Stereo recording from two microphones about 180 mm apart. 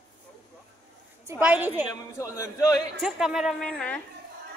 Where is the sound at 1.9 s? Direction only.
15° left (ahead or behind).